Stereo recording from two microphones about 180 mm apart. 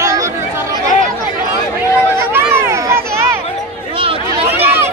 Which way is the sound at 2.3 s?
15° right (ahead or behind).